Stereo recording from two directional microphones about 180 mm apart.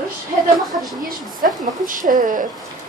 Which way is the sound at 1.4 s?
50° right (ahead or behind).